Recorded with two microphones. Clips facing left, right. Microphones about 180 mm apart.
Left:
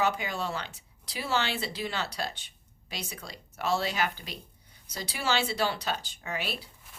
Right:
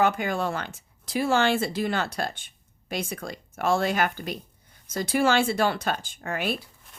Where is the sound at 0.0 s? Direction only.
50° right (ahead or behind).